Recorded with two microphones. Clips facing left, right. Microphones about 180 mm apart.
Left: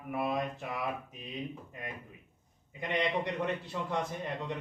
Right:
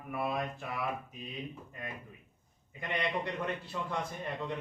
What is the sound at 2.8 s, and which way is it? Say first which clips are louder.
A man's voice: left 3 dB; 20° left (ahead or behind).